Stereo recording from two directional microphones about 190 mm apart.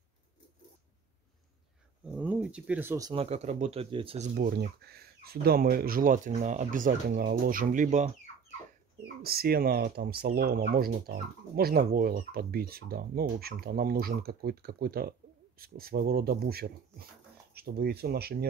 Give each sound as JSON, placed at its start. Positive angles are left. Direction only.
{"t": 2.0, "sound": "speech", "side_deg": -5}
{"t": 3.1, "sound": "speech", "side_deg": -30}
{"t": 4.4, "sound": "speech", "side_deg": -55}
{"t": 9.2, "sound": "speech", "side_deg": -55}